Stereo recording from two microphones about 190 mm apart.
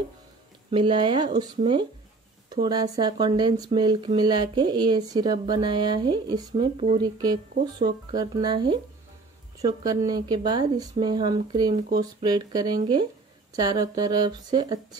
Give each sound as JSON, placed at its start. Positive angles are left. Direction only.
{"t": 0.7, "sound": "speech", "side_deg": -25}
{"t": 6.5, "sound": "speech", "side_deg": -35}
{"t": 7.0, "sound": "speech", "side_deg": -20}